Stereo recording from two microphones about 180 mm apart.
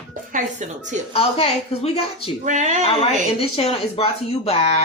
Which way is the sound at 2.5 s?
40° right (ahead or behind).